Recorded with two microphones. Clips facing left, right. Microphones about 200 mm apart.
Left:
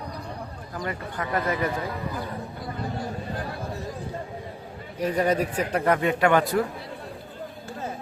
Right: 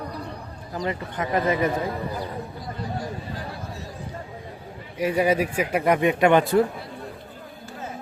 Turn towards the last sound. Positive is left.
turn(degrees=-25)  # may be behind; listen again after turning